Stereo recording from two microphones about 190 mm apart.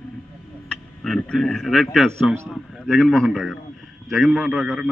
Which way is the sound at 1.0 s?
5° left (ahead or behind).